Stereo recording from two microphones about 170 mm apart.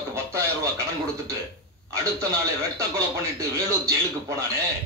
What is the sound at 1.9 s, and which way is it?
A man's voice, 20° right (ahead or behind).